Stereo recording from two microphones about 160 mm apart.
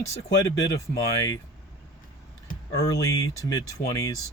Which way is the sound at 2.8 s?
20° left (ahead or behind).